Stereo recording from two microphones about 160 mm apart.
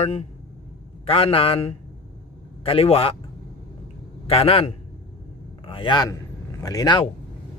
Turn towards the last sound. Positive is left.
turn(degrees=25)  # may be behind; listen again after turning